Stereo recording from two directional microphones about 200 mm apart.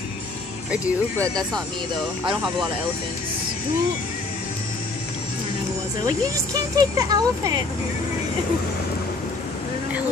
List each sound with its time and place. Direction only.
0.7 s speech: 10° right (ahead or behind)
6.0 s speech: 15° right (ahead or behind)